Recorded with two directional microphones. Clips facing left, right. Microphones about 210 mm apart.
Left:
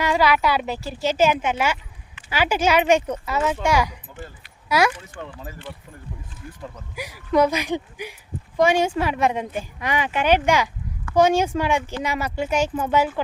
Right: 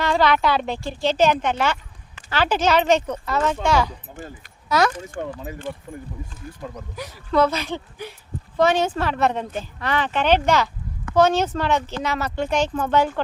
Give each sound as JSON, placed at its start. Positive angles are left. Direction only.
{"t": 0.0, "sound": "speech", "side_deg": 10}
{"t": 4.9, "sound": "speech", "side_deg": -45}
{"t": 6.9, "sound": "speech", "side_deg": 10}